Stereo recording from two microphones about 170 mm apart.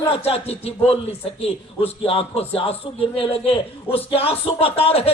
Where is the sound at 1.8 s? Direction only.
35° left (ahead or behind).